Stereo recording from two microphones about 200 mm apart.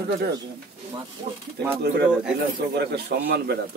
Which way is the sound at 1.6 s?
60° right (ahead or behind).